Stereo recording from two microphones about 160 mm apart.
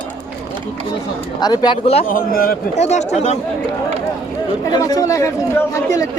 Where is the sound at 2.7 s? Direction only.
45° left (ahead or behind).